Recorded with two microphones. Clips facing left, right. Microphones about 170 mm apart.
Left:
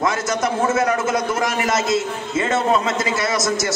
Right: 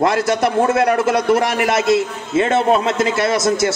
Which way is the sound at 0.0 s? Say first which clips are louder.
Right 5 dB; 65° right (ahead or behind).